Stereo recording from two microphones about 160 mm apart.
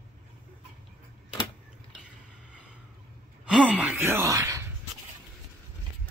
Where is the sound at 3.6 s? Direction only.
10° right (ahead or behind).